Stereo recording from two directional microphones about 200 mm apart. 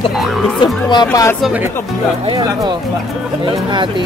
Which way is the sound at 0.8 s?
20° left (ahead or behind).